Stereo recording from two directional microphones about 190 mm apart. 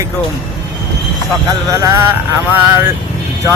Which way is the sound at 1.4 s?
15° right (ahead or behind).